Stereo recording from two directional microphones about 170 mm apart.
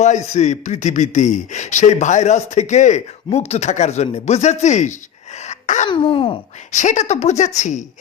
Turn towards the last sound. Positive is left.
turn(degrees=45)  # may be behind; listen again after turning